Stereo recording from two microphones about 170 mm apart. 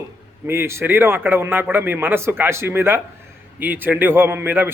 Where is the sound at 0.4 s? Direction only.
15° right (ahead or behind).